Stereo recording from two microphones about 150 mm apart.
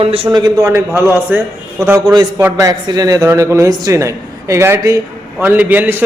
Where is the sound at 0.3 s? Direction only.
25° right (ahead or behind).